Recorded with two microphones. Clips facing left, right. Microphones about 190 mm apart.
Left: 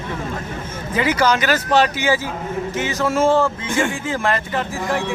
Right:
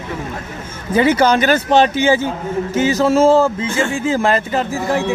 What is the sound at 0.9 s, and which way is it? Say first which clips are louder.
Speech: right 5 dB; 30° right (ahead or behind).